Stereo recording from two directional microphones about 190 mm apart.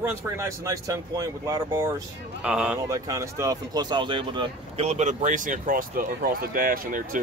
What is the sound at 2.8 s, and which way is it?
Speech, 15° right (ahead or behind).